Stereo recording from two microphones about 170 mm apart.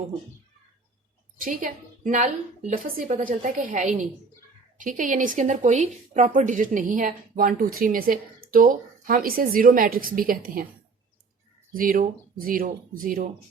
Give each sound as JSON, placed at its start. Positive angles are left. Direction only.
{"t": 1.4, "sound": "speech", "side_deg": -50}
{"t": 11.7, "sound": "speech", "side_deg": -55}